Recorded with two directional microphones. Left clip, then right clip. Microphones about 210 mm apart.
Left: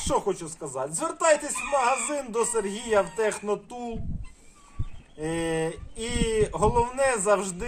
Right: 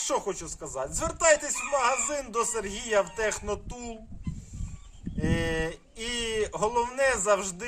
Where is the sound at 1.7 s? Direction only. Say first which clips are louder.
Left 2 dB; 15° right (ahead or behind).